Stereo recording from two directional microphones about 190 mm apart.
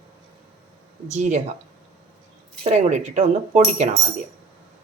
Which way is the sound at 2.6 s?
40° right (ahead or behind).